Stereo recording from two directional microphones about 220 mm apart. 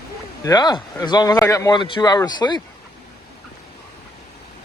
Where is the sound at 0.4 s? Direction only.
20° left (ahead or behind).